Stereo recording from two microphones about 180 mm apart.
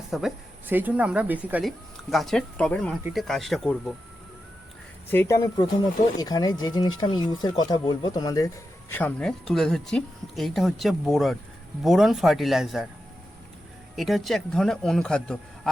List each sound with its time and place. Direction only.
0.1 s speech: centre (ahead or behind)
5.1 s speech: 15° left (ahead or behind)
8.9 s speech: 10° left (ahead or behind)
13.9 s speech: centre (ahead or behind)